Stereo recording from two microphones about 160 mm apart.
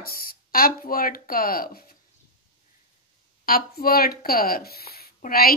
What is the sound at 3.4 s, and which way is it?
Speech, 65° left (ahead or behind).